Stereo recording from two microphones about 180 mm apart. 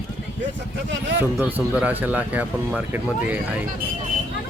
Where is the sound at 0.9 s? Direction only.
80° right.